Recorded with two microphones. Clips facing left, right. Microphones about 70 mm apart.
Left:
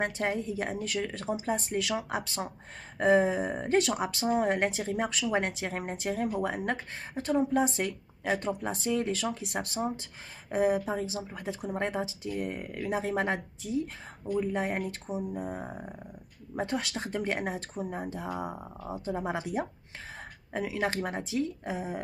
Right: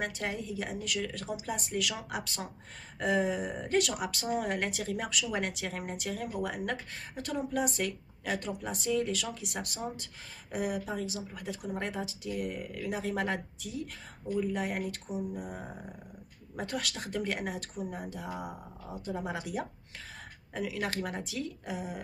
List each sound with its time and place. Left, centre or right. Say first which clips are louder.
0.0 s speech: left 5 dB; left